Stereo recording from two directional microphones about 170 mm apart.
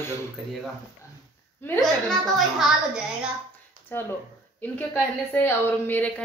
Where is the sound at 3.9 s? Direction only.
15° left (ahead or behind).